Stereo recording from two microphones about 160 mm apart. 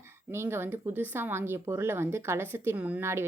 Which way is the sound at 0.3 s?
15° right (ahead or behind).